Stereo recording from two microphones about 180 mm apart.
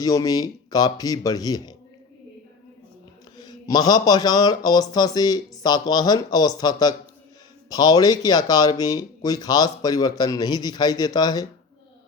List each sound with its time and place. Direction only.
0.0 s speech: 20° left (ahead or behind)
3.3 s speech: 20° left (ahead or behind)